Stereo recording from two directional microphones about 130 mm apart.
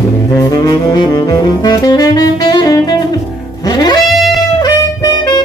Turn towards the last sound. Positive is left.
turn(degrees=30)  # may be behind; listen again after turning